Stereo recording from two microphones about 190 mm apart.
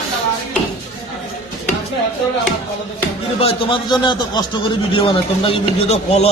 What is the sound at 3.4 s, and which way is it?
Speech, 25° left (ahead or behind).